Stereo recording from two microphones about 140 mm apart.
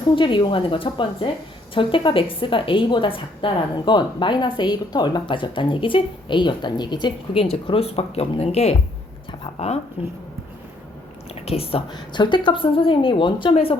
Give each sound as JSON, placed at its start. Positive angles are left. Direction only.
{"t": 0.2, "sound": "a woman's voice", "side_deg": 35}
{"t": 7.4, "sound": "speech", "side_deg": 45}
{"t": 11.3, "sound": "speech", "side_deg": 45}
{"t": 11.9, "sound": "a woman's voice", "side_deg": 30}